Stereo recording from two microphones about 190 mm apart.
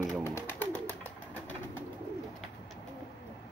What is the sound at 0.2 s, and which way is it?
Bird, 10° left (ahead or behind).